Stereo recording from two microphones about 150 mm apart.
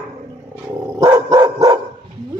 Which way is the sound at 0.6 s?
20° right (ahead or behind).